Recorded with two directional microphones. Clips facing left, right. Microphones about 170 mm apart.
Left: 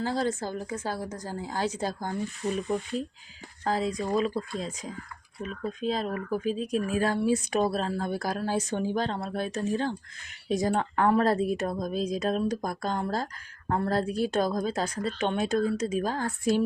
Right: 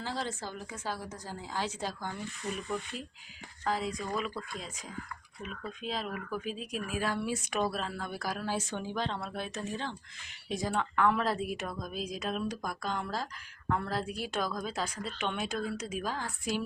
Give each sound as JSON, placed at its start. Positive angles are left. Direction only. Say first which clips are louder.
{"t": 0.0, "sound": "speech", "louder": "left 8 dB", "side_deg": 45}